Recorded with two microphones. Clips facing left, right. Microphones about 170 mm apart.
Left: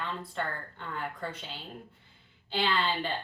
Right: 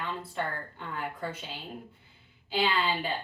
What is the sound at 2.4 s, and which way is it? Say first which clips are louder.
Speech: right 1 dB; 5° right (ahead or behind).